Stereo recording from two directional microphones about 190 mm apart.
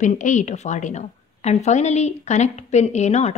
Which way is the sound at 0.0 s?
40° left (ahead or behind).